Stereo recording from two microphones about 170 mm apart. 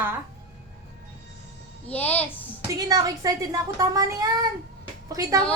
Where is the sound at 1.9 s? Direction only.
10° left (ahead or behind).